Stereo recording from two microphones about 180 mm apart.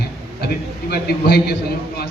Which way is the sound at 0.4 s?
60° left (ahead or behind).